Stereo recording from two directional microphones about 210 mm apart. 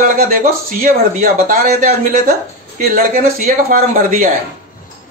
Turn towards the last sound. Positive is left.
turn(degrees=-40)  # may be behind; listen again after turning